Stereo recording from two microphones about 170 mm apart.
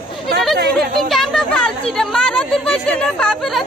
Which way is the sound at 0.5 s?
70° right (ahead or behind).